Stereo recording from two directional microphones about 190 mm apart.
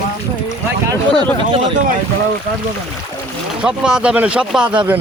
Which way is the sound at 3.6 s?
5° right (ahead or behind).